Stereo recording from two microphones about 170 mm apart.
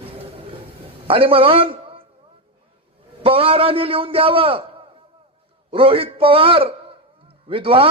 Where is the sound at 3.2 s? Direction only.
35° right (ahead or behind).